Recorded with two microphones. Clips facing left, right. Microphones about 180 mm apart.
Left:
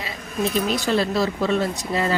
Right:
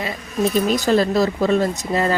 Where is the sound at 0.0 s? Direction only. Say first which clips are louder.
Right 4 dB; 50° right (ahead or behind).